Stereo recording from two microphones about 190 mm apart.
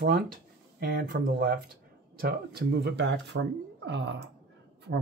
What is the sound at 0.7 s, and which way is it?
Speech, 55° right (ahead or behind).